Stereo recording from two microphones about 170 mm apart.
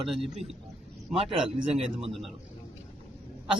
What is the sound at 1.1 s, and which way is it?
Speech, 35° right (ahead or behind).